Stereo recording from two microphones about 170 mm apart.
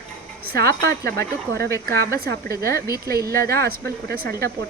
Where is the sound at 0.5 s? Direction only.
65° right (ahead or behind).